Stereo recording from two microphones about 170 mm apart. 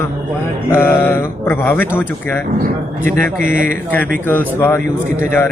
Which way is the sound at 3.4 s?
50° right (ahead or behind).